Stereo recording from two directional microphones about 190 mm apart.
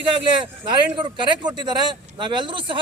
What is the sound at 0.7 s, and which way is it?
A man's voice, 25° right (ahead or behind).